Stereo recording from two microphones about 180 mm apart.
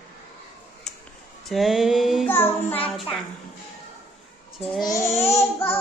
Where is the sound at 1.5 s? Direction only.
Centre (ahead or behind).